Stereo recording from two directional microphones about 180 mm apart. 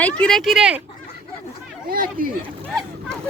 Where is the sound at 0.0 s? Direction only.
5° left (ahead or behind).